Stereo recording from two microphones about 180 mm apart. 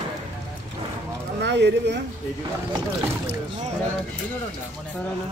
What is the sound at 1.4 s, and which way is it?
Speech, 75° right (ahead or behind).